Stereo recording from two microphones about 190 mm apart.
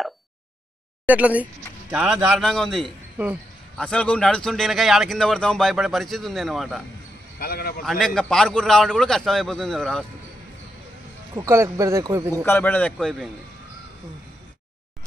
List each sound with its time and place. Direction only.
1.0 s a man's voice: 10° right (ahead or behind)
7.3 s a man's voice: 50° left (ahead or behind)
7.8 s a man's voice: centre (ahead or behind)
11.3 s speech: 15° right (ahead or behind)
12.4 s a man's voice: 10° left (ahead or behind)
12.9 s a man's voice: centre (ahead or behind)